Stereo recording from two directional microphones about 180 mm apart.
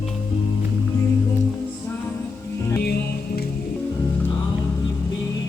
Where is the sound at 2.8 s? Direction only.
60° left (ahead or behind).